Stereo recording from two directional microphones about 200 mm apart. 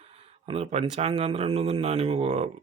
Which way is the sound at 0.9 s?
35° right (ahead or behind).